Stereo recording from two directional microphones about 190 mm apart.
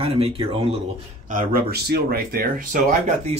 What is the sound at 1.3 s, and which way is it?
Speech, 45° right (ahead or behind).